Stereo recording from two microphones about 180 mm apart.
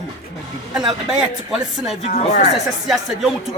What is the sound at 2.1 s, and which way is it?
Speech, 40° left (ahead or behind).